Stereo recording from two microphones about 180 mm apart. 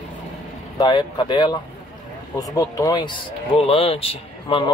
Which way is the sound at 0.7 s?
25° left (ahead or behind).